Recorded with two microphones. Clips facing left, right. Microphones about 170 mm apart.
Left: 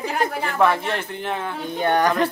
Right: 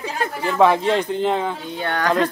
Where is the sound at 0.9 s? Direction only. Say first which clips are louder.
Right 7 dB; 15° right (ahead or behind).